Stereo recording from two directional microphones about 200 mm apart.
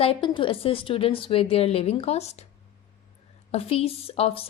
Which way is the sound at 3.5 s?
30° left (ahead or behind).